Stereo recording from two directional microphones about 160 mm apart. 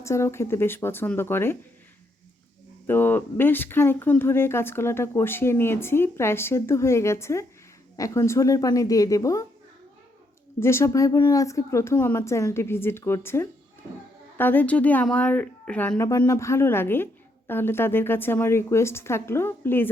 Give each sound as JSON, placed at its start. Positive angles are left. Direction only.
{"t": 0.0, "sound": "a woman's voice", "side_deg": 15}
{"t": 2.8, "sound": "a woman's voice", "side_deg": 15}
{"t": 10.6, "sound": "a woman's voice", "side_deg": 15}